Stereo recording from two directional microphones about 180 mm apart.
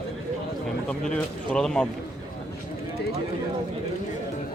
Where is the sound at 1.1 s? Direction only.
5° left (ahead or behind).